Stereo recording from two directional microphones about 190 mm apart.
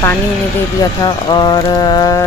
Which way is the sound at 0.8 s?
20° left (ahead or behind).